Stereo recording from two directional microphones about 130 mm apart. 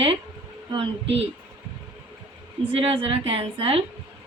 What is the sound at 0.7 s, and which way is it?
Speech, 45° right (ahead or behind).